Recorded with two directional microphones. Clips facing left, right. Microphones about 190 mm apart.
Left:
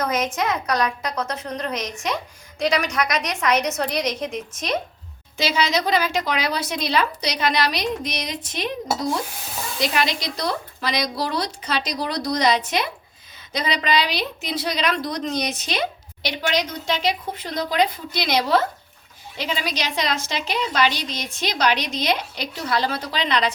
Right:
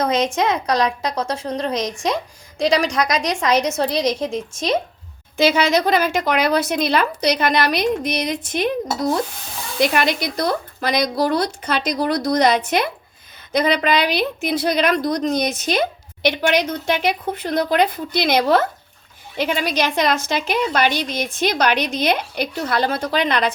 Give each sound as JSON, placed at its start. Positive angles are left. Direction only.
{"t": 0.0, "sound": "a woman's voice", "side_deg": -30}
{"t": 5.4, "sound": "a woman's voice", "side_deg": -55}
{"t": 9.8, "sound": "a woman's voice", "side_deg": -55}